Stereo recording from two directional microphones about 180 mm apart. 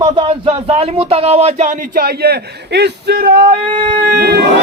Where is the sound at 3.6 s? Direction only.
25° right (ahead or behind).